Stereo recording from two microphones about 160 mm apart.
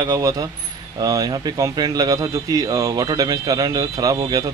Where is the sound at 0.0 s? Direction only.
20° right (ahead or behind).